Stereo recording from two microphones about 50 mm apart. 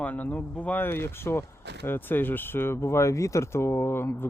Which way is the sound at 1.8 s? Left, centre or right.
Left.